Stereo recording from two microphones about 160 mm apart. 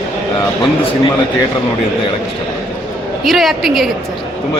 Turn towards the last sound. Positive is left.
turn(degrees=0)  # may be behind; listen again after turning